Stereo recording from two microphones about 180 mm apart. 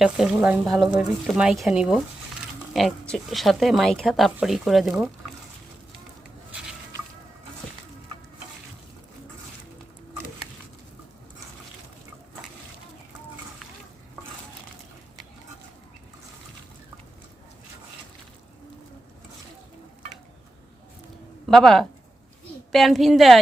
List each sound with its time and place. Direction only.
0.0 s speech: 5° right (ahead or behind)
21.5 s speech: 5° left (ahead or behind)